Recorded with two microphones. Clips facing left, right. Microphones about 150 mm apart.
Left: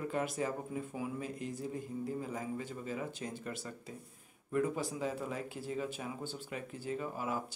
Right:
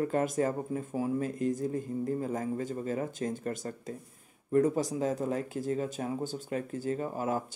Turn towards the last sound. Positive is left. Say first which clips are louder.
# right 6 dB
turn(degrees=-45)  # may be behind; listen again after turning